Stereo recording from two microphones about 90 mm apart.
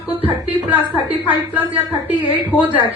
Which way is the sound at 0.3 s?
20° right (ahead or behind).